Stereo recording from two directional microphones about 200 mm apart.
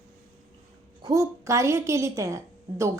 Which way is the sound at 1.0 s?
15° right (ahead or behind).